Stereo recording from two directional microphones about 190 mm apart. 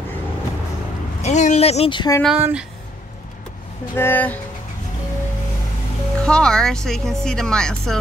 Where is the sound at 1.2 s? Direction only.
40° left (ahead or behind); by 2.2 s 25° left (ahead or behind).